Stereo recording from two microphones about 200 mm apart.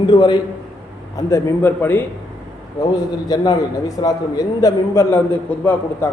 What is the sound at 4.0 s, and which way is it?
A man's voice, 20° left (ahead or behind).